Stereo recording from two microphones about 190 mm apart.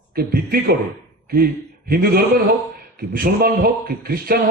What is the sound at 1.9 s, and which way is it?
A man's voice, 50° right (ahead or behind).